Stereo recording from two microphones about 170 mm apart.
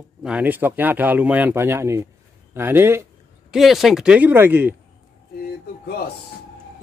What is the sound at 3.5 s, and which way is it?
Speech, centre (ahead or behind).